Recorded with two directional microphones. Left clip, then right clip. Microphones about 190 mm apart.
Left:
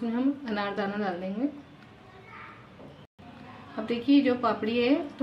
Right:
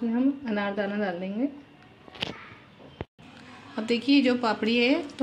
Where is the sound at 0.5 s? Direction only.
30° right (ahead or behind).